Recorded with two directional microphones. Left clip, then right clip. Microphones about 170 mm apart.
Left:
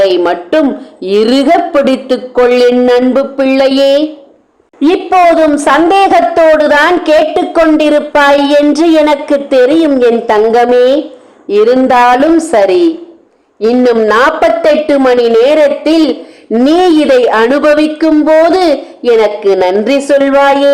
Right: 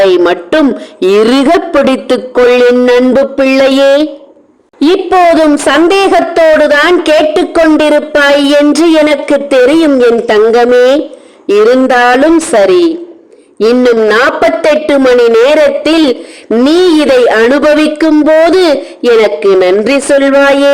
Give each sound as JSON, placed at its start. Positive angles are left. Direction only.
{"t": 0.0, "sound": "speech", "side_deg": -35}